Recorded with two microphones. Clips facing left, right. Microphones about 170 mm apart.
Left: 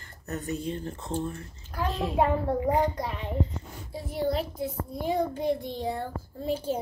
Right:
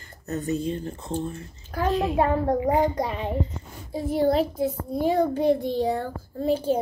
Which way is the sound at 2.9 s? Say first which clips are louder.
Right 4 dB; 90° right.